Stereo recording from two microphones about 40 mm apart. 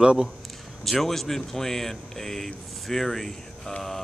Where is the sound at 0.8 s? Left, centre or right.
Centre.